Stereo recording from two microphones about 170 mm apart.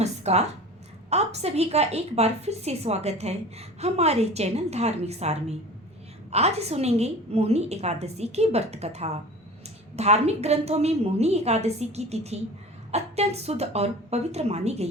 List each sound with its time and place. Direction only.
0.0 s a woman's voice: 40° right (ahead or behind)